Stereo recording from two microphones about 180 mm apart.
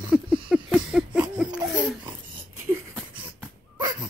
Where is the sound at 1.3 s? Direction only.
5° right (ahead or behind).